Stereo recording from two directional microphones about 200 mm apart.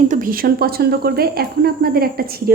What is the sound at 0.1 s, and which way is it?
Speech, 45° right (ahead or behind).